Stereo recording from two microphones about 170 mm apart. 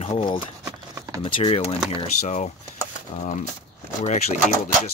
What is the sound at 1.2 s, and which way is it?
Speech, 35° left (ahead or behind).